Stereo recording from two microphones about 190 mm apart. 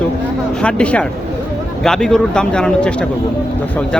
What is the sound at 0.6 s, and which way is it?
Speech, 5° left (ahead or behind).